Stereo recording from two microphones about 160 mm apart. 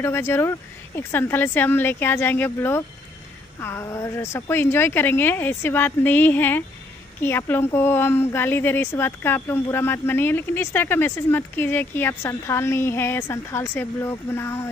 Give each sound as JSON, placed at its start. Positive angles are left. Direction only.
{"t": 0.0, "sound": "a woman's voice", "side_deg": 15}